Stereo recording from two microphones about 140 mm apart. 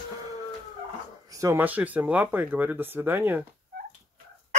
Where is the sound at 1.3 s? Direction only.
25° right (ahead or behind).